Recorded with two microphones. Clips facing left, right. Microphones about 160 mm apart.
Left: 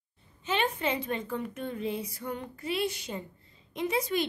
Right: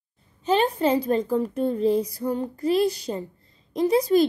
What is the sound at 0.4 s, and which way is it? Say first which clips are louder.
A woman's voice: right 9 dB; 35° right (ahead or behind).